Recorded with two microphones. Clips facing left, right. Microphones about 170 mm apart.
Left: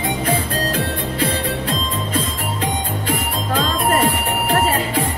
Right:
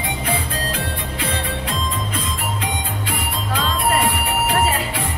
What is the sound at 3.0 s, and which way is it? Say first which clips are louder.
Music: left 5 dB; 40° left (ahead or behind).